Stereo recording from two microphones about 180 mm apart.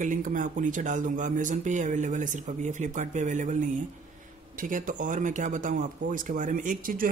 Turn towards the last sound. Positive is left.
turn(degrees=-50)  # may be behind; listen again after turning